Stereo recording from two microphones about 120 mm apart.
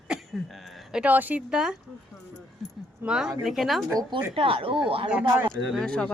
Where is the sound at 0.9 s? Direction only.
15° right (ahead or behind).